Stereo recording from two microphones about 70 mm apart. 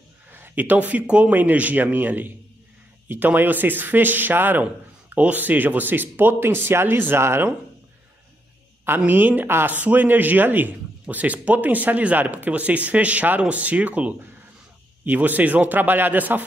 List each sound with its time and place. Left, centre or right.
0.3 s speech: right
8.8 s speech: right